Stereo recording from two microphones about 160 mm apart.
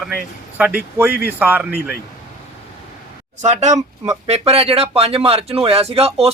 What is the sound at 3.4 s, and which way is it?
Speech, 45° right (ahead or behind).